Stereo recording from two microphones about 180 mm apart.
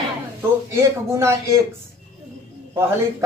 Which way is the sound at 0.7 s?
15° right (ahead or behind).